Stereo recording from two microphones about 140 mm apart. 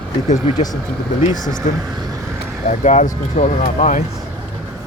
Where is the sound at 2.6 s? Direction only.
60° left (ahead or behind).